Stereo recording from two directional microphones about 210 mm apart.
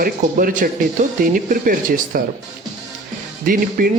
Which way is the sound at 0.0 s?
40° right (ahead or behind).